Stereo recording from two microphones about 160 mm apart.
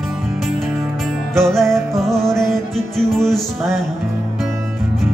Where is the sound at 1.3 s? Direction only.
Centre (ahead or behind).